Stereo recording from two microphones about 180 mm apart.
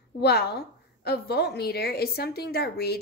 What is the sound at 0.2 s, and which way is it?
A woman's voice, 65° left (ahead or behind).